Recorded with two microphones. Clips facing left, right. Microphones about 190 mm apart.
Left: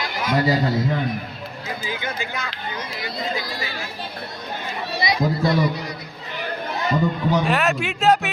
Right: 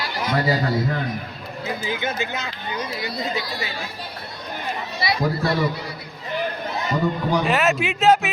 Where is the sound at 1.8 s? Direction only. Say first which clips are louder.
Right 3 dB; 25° right (ahead or behind).